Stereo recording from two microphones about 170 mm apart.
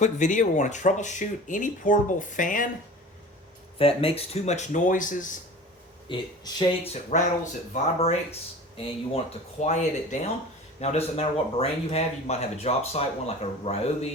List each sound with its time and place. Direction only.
0.0 s speech: 50° left (ahead or behind)
3.8 s speech: 35° left (ahead or behind); by 5.4 s 50° left (ahead or behind)
6.1 s speech: 25° left (ahead or behind)
6.8 s speech: 40° left (ahead or behind)
9.1 s speech: 45° left (ahead or behind)